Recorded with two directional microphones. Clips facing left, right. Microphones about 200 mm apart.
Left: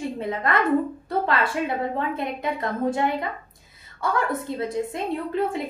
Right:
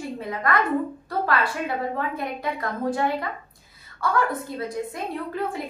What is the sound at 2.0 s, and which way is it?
A woman's voice, 25° left (ahead or behind).